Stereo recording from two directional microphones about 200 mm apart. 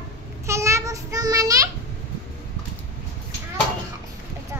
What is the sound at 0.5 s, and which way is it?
Child singing, 15° right (ahead or behind).